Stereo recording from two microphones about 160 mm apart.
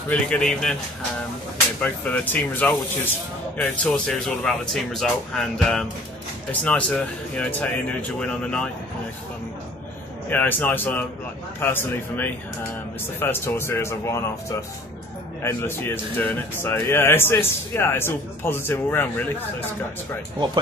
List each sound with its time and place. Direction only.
0.1 s speech: 5° left (ahead or behind)
1.8 s speech: 10° left (ahead or behind)
10.3 s speech: 10° left (ahead or behind)
15.4 s speech: 15° left (ahead or behind)